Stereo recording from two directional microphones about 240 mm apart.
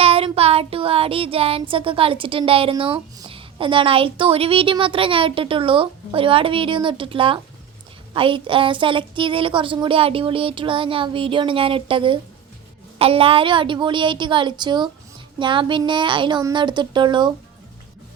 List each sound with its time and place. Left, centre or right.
0.0 s child singing: right